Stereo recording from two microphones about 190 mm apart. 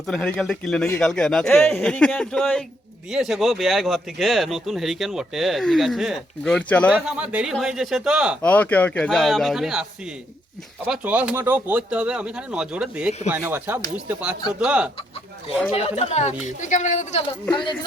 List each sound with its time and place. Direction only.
0.1 s speech: 5° left (ahead or behind)
6.9 s speech: 5° right (ahead or behind)
8.4 s speech: 10° left (ahead or behind)
10.8 s speech: 5° right (ahead or behind)
15.7 s a woman's voice: 35° left (ahead or behind)
17.5 s speech: 25° left (ahead or behind)